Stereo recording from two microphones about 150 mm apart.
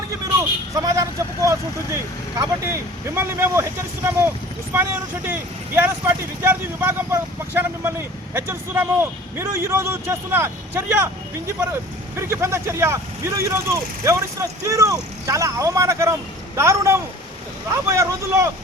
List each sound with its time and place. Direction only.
0.7 s speech: 20° right (ahead or behind)